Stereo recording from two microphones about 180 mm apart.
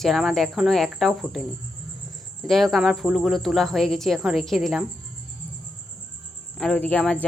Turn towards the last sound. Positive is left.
turn(degrees=5)  # may be behind; listen again after turning